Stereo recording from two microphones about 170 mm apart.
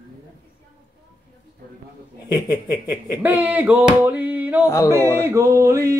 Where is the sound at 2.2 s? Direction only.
20° left (ahead or behind).